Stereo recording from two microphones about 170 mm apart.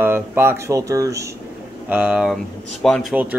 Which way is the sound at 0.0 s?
15° right (ahead or behind).